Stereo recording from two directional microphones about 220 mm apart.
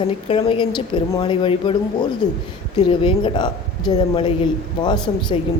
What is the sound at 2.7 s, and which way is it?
A man's voice, 25° left (ahead or behind).